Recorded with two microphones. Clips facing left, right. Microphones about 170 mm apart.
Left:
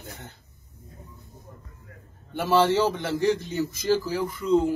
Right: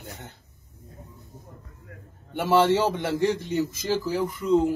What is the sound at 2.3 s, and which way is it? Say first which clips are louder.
A man's voice: right 1 dB; 20° right (ahead or behind).